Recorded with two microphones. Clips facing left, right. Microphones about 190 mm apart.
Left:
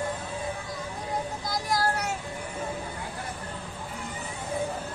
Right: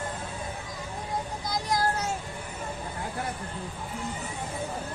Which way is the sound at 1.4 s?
20° right (ahead or behind).